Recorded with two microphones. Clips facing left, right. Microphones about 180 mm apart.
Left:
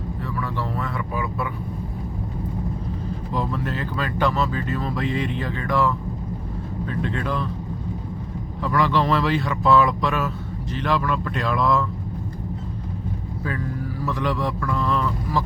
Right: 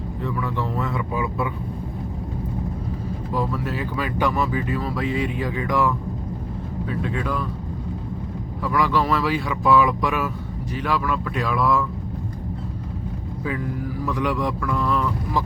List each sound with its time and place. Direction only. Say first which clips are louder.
0.3 s speech: right 3 dB; 15° right (ahead or behind)
3.3 s speech: right 1 dB; 10° right (ahead or behind)
8.6 s speech: even; 10° right (ahead or behind)
14.0 s speech: right 1 dB; 10° right (ahead or behind)